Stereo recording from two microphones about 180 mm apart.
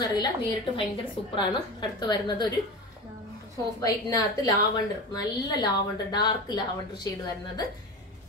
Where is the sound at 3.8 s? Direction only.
20° left (ahead or behind).